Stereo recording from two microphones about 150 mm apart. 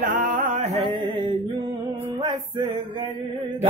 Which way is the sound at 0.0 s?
65° right (ahead or behind).